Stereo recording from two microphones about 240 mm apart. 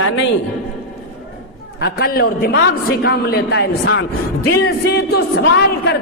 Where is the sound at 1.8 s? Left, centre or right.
Left.